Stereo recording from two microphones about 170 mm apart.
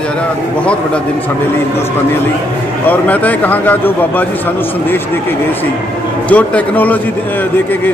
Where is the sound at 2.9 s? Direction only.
10° left (ahead or behind).